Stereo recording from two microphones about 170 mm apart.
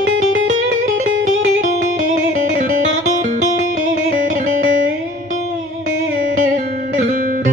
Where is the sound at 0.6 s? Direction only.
50° right (ahead or behind).